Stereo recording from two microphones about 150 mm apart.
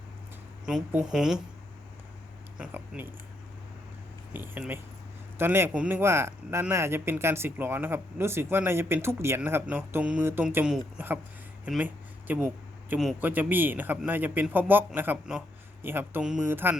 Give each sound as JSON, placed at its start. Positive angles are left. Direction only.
{"t": 0.6, "sound": "speech", "side_deg": -5}
{"t": 2.6, "sound": "speech", "side_deg": -10}
{"t": 4.4, "sound": "speech", "side_deg": -15}
{"t": 12.3, "sound": "speech", "side_deg": -10}